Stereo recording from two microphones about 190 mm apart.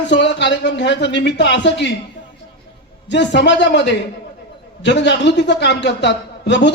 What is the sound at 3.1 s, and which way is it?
A man's voice, 65° left (ahead or behind).